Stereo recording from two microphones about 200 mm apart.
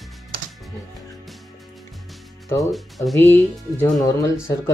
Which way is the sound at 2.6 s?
Centre (ahead or behind).